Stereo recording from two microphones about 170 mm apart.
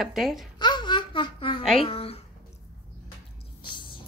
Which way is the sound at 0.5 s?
25° left (ahead or behind).